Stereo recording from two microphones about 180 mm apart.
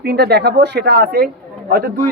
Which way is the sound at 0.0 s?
65° right (ahead or behind).